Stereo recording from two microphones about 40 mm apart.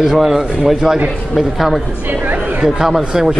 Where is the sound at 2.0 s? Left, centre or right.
Right.